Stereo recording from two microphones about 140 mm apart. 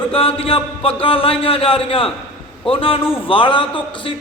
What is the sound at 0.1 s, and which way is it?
Mantra, 40° left (ahead or behind).